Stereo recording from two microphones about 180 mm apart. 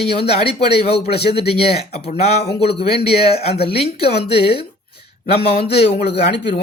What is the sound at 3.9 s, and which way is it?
Speech, 60° left (ahead or behind).